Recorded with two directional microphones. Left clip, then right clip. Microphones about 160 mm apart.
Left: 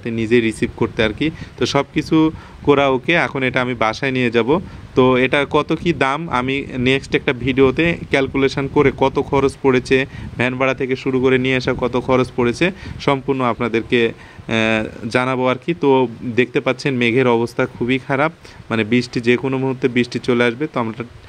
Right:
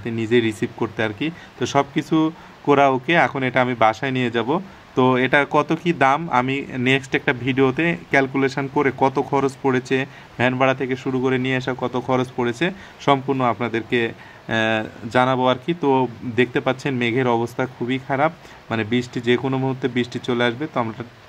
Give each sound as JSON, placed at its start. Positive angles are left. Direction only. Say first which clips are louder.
{"t": 0.0, "sound": "speech", "louder": "left 3 dB", "side_deg": 30}